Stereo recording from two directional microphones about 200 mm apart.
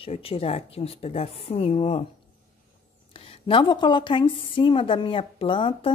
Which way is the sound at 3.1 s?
25° left (ahead or behind).